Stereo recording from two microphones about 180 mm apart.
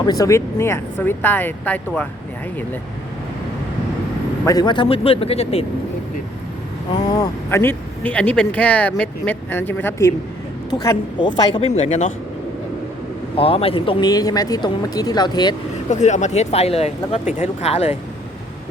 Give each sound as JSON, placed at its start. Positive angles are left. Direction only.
{"t": 0.0, "sound": "speech", "side_deg": 20}
{"t": 4.4, "sound": "speech", "side_deg": 20}
{"t": 6.9, "sound": "speech", "side_deg": 20}
{"t": 11.6, "sound": "speech", "side_deg": 40}
{"t": 13.3, "sound": "speech", "side_deg": 30}
{"t": 15.9, "sound": "speech", "side_deg": 40}